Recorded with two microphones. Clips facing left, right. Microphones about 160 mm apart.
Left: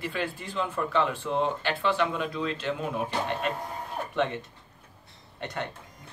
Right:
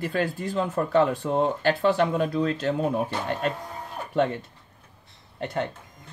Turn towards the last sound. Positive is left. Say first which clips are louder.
# right 6 dB
turn(degrees=-35)  # may be behind; listen again after turning